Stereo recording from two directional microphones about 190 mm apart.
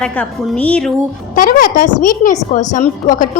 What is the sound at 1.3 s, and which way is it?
A woman's voice, 45° left (ahead or behind).